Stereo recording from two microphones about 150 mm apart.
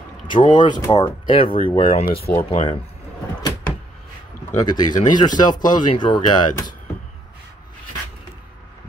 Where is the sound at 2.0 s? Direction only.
90° left.